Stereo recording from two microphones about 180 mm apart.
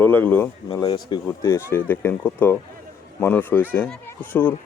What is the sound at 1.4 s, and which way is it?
Speech, 15° left (ahead or behind).